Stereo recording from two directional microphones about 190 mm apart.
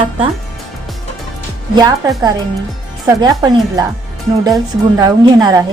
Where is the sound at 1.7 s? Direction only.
20° right (ahead or behind).